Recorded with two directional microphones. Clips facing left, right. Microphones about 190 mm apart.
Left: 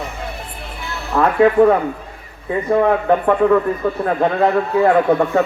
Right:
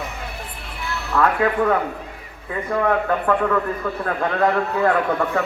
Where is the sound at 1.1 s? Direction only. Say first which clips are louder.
Left 6 dB; 25° left (ahead or behind).